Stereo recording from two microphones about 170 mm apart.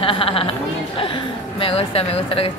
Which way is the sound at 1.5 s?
35° left (ahead or behind).